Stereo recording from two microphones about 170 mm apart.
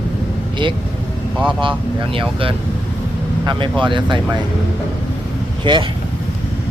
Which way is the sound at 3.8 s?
30° right (ahead or behind).